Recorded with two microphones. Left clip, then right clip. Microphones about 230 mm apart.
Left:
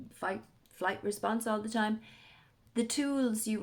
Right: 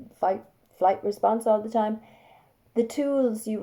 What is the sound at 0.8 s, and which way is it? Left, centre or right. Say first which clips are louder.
A woman's voice: right 11 dB; left.